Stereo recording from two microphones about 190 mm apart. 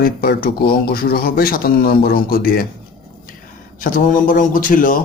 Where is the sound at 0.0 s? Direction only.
50° left (ahead or behind).